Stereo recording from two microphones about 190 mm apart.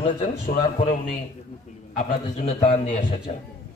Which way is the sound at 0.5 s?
40° left (ahead or behind).